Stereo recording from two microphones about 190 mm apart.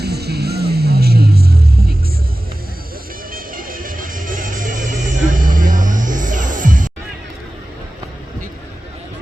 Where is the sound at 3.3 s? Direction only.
50° right (ahead or behind).